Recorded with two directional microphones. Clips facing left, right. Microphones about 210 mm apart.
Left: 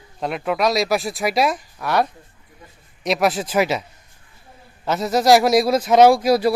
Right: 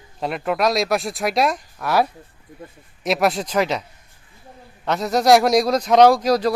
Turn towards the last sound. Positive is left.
turn(degrees=10)  # may be behind; listen again after turning